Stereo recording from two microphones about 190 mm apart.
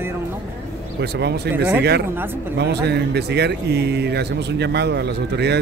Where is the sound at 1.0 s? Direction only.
60° right (ahead or behind).